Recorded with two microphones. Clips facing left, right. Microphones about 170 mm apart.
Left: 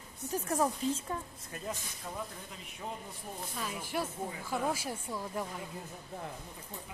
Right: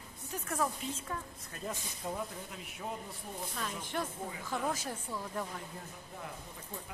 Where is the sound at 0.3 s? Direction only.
35° left (ahead or behind).